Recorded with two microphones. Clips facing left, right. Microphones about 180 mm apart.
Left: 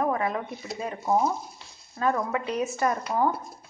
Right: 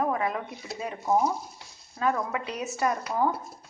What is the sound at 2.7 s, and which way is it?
Speech, 5° right (ahead or behind).